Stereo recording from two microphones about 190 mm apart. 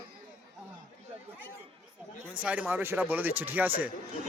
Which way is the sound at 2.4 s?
5° right (ahead or behind).